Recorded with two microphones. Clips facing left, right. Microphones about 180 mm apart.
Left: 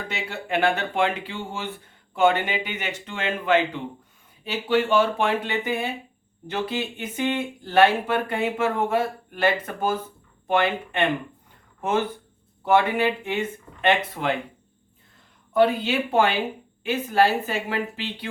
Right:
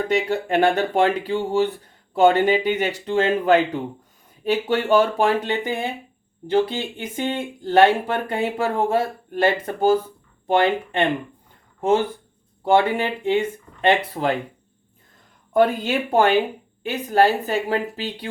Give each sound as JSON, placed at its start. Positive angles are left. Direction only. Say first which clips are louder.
{"t": 0.1, "sound": "speech", "louder": "right 6 dB", "side_deg": -40}
{"t": 15.5, "sound": "speech", "louder": "right 2 dB", "side_deg": -45}